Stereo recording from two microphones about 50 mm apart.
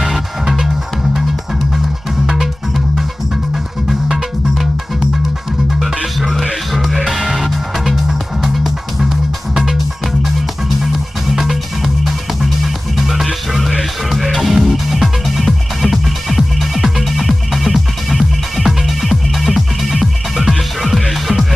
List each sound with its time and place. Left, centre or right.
0.0 s music: centre
2.2 s music: centre
4.1 s music: centre
10.9 s music: centre